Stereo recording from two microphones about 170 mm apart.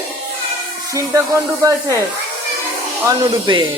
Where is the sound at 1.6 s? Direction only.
15° right (ahead or behind).